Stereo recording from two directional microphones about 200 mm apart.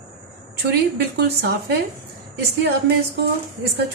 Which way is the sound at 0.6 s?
55° right (ahead or behind).